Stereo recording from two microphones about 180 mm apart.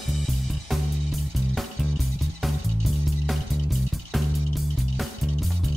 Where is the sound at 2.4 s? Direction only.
Centre (ahead or behind).